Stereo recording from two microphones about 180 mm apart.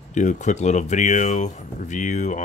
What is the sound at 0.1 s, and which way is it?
Speech, 40° left (ahead or behind).